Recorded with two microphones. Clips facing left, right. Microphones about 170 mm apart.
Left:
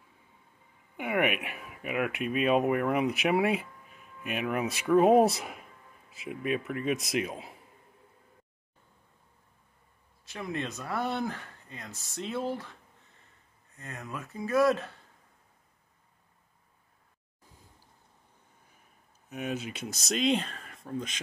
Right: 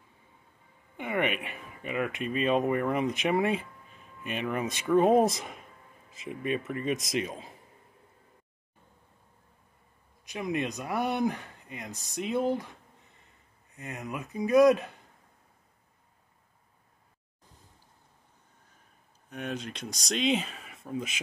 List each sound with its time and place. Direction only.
0.9 s speech: 10° left (ahead or behind)
10.2 s speech: 15° right (ahead or behind)
13.7 s speech: 20° right (ahead or behind)
19.2 s speech: 5° left (ahead or behind)